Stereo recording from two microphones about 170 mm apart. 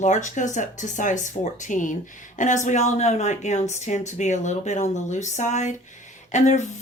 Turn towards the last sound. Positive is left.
turn(degrees=45)  # may be behind; listen again after turning